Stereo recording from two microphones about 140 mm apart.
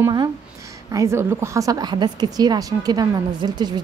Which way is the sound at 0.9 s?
20° right (ahead or behind).